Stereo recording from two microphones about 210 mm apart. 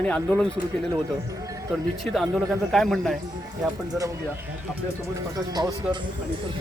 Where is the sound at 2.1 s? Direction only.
Centre (ahead or behind).